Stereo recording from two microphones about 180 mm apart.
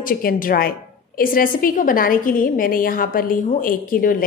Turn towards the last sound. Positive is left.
turn(degrees=50)  # may be behind; listen again after turning